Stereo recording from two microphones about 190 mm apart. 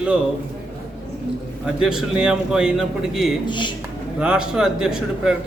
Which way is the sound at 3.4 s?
25° left (ahead or behind).